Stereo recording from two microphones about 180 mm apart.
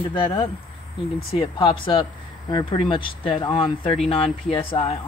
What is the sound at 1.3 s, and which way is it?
Speech, 30° left (ahead or behind).